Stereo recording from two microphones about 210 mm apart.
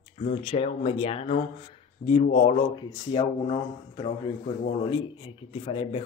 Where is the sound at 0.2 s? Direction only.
30° left (ahead or behind).